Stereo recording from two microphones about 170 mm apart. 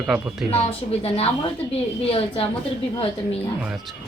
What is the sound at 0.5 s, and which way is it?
Speech, 35° left (ahead or behind).